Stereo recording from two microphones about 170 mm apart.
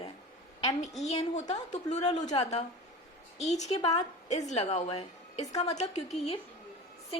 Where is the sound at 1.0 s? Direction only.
40° left (ahead or behind).